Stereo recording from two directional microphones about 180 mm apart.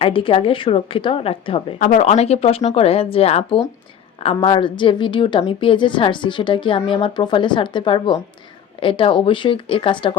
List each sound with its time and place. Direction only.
0.0 s a woman's voice: 30° left (ahead or behind)